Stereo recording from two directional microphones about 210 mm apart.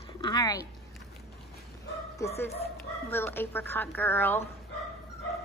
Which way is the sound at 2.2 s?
15° left (ahead or behind).